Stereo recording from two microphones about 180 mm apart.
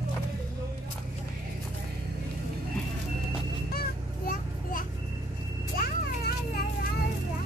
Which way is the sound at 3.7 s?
55° left (ahead or behind).